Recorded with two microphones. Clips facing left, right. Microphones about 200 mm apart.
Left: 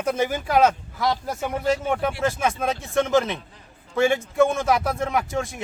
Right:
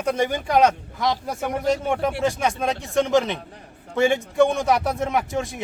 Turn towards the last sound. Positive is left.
turn(degrees=0)  # may be behind; listen again after turning